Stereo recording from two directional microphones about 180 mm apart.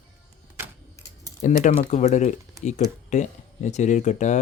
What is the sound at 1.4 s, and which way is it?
Speech, 45° left (ahead or behind).